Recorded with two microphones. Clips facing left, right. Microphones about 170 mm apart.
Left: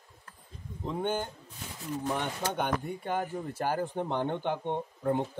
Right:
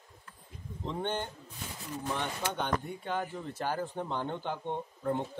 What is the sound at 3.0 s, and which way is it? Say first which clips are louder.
Speech: left 2 dB; 45° left (ahead or behind).